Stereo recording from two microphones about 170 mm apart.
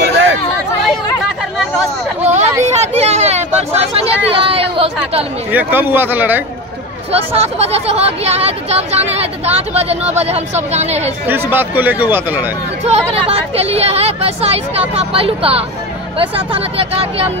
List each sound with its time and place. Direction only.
2.2 s a sound: 40° right (ahead or behind)
5.5 s speech: 10° right (ahead or behind)
7.1 s speech: 35° right (ahead or behind)
11.5 s speech: 10° right (ahead or behind)
12.8 s speech: 35° right (ahead or behind)